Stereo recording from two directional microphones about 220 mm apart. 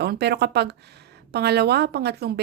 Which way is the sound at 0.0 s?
50° right (ahead or behind).